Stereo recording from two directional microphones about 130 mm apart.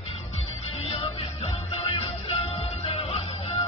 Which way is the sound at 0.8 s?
40° left (ahead or behind).